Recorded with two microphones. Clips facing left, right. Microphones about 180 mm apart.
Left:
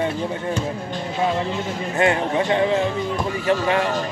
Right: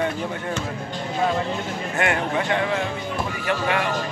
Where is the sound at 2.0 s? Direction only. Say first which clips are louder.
Left 4 dB; 30° left (ahead or behind).